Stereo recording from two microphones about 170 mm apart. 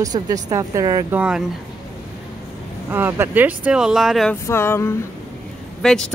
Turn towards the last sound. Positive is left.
turn(degrees=5)  # may be behind; listen again after turning